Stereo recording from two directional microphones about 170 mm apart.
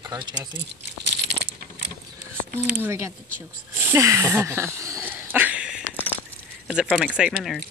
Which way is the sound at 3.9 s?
15° right (ahead or behind).